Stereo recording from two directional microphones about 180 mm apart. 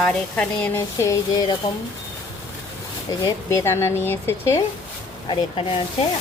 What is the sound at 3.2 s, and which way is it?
Speech, 15° left (ahead or behind).